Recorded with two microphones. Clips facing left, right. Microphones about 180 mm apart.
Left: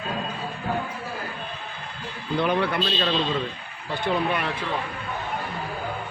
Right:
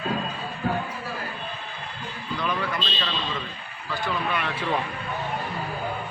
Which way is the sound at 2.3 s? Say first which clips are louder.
Left 6 dB; 65° left (ahead or behind).